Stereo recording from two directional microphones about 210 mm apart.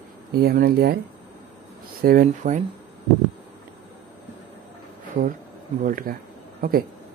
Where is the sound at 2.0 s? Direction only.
45° right (ahead or behind).